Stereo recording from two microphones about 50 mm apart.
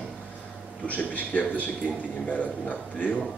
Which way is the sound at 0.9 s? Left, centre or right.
Left.